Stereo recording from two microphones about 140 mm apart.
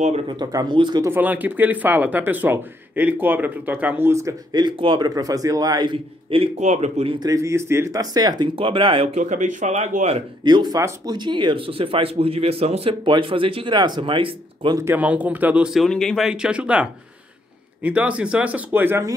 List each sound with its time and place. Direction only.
0.3 s speech: 30° right (ahead or behind)
1.0 s speech: 15° right (ahead or behind); by 7.2 s 50° right (ahead or behind)
7.2 s speech: 25° right (ahead or behind)
9.1 s speech: 60° right (ahead or behind)
10.4 s speech: 30° right (ahead or behind)
14.8 s speech: 15° right (ahead or behind)